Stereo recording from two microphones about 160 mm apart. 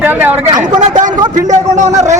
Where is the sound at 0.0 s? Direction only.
10° right (ahead or behind).